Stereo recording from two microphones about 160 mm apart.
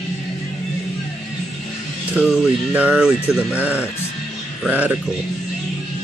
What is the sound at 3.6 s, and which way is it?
Speech, 10° right (ahead or behind).